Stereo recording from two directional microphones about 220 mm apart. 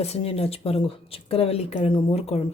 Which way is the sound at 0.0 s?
25° left (ahead or behind).